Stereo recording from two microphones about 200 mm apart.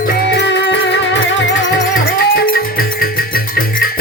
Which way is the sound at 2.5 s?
45° left (ahead or behind).